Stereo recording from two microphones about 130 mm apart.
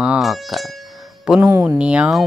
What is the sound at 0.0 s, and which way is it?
Speech, 5° right (ahead or behind).